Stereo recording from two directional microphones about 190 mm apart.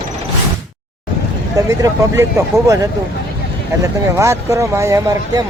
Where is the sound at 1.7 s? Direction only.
15° right (ahead or behind).